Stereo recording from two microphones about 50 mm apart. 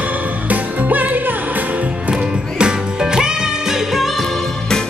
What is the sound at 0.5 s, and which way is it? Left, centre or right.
Music, right.